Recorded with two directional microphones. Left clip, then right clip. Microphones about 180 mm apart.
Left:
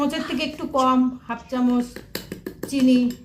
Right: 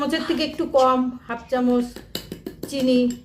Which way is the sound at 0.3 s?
35° right (ahead or behind).